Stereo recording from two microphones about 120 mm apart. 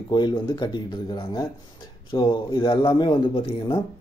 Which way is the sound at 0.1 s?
40° left (ahead or behind).